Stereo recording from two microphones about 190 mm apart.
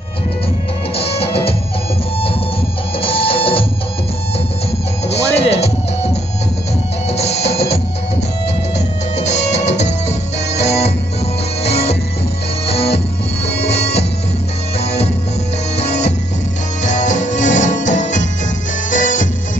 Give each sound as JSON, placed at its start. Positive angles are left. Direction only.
{"t": 0.9, "sound": "music", "side_deg": 30}
{"t": 3.0, "sound": "music", "side_deg": 30}
{"t": 5.0, "sound": "music", "side_deg": 35}
{"t": 7.1, "sound": "drum", "side_deg": 35}
{"t": 8.7, "sound": "music", "side_deg": 35}